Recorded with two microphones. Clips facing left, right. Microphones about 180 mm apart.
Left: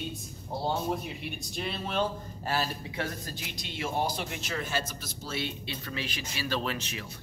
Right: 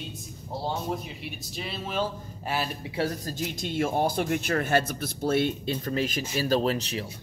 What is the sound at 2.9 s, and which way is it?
A man's voice, 40° right (ahead or behind).